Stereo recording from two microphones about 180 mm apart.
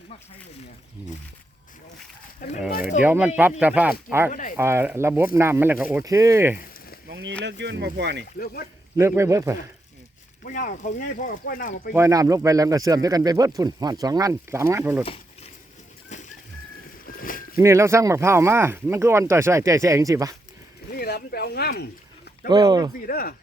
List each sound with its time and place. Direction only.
2.4 s speech: 45° left (ahead or behind)
3.0 s speech: 10° right (ahead or behind)
4.3 s speech: 45° left (ahead or behind)
4.5 s speech: 15° right (ahead or behind)
7.1 s speech: 80° right
9.0 s speech: 15° right (ahead or behind)
10.4 s speech: 50° left (ahead or behind)
11.9 s speech: 15° right (ahead or behind)
17.1 s boat: 50° left (ahead or behind)
17.6 s speech: 15° right (ahead or behind)
20.9 s speech: 60° left (ahead or behind)
22.4 s speech: 25° right (ahead or behind)
23.0 s speech: 55° left (ahead or behind)